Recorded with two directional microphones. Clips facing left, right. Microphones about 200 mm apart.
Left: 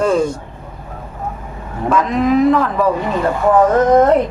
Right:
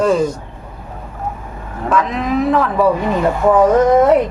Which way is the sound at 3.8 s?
10° right (ahead or behind).